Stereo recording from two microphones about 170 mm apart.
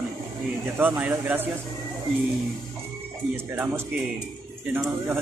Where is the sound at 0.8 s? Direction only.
10° right (ahead or behind).